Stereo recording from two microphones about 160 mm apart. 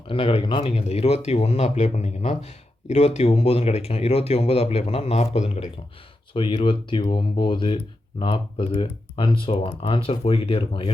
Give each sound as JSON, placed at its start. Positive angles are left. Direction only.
{"t": 0.1, "sound": "speech", "side_deg": 35}
{"t": 6.3, "sound": "speech", "side_deg": 30}